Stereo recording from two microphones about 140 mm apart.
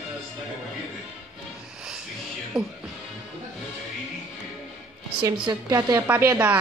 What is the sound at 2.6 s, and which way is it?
Speech, 5° right (ahead or behind).